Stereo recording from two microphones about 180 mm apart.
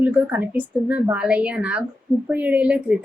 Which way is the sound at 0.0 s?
10° right (ahead or behind).